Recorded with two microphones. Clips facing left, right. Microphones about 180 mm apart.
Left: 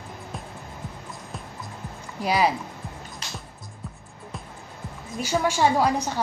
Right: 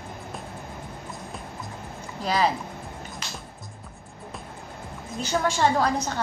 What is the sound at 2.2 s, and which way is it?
Speech, 10° left (ahead or behind).